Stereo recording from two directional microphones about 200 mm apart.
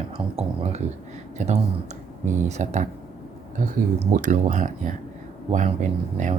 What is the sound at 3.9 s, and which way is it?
Speech, 40° right (ahead or behind).